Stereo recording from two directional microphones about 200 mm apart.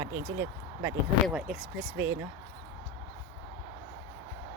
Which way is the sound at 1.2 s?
Centre (ahead or behind).